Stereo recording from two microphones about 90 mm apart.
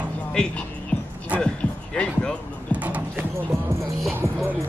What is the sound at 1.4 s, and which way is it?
Speech, 10° left (ahead or behind).